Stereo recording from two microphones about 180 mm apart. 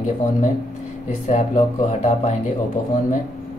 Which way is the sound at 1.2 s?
40° left (ahead or behind).